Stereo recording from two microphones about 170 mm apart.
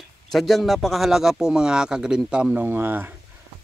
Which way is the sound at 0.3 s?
Centre (ahead or behind).